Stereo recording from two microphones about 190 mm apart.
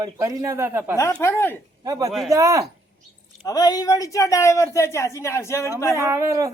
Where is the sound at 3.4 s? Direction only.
20° left (ahead or behind).